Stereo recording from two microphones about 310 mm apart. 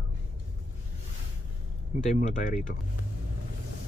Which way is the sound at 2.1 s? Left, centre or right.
Left.